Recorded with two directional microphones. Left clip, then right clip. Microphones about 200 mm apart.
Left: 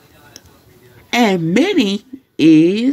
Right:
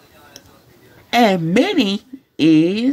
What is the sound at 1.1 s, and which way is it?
A woman's voice, 10° right (ahead or behind).